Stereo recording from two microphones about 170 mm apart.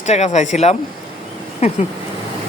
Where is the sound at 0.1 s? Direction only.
40° left (ahead or behind).